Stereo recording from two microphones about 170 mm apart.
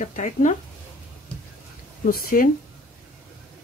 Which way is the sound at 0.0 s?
45° left (ahead or behind).